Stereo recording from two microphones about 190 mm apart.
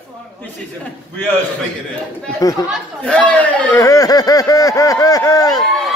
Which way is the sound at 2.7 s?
5° left (ahead or behind).